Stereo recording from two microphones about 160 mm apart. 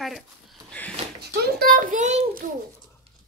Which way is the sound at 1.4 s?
70° right (ahead or behind).